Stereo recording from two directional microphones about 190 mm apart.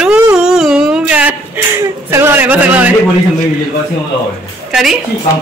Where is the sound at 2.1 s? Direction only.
10° right (ahead or behind).